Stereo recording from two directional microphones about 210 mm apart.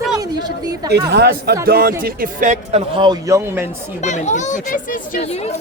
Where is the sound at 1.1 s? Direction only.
50° right (ahead or behind); by 3.7 s 10° right (ahead or behind).